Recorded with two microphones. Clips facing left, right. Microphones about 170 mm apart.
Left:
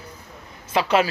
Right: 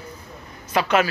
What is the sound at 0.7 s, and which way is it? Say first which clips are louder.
Speech: even; 30° left (ahead or behind).